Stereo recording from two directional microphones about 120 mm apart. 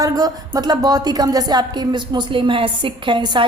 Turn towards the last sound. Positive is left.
turn(degrees=-40)  # may be behind; listen again after turning